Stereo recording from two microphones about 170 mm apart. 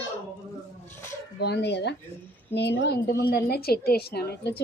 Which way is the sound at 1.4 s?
80° left.